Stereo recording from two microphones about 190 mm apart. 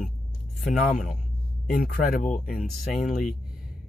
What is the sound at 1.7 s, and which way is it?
Speech, 50° left (ahead or behind).